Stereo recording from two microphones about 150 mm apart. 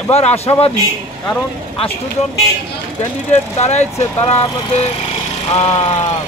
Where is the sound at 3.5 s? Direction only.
50° left (ahead or behind).